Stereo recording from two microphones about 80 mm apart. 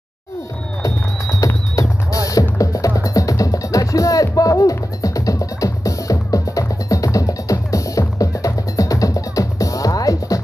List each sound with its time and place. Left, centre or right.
1.4 s music: left